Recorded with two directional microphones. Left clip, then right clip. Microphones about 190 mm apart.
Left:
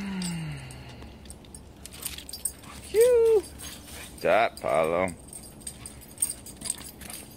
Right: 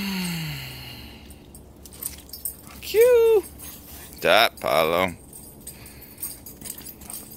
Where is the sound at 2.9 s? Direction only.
30° right (ahead or behind).